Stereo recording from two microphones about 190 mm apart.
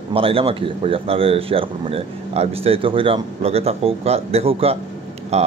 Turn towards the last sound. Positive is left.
turn(degrees=-35)  # may be behind; listen again after turning